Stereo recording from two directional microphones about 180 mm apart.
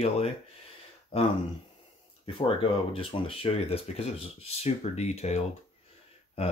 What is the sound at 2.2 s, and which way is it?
Speech, 30° left (ahead or behind).